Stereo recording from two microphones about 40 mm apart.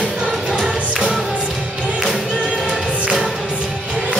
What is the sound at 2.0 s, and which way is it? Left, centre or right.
Music, centre.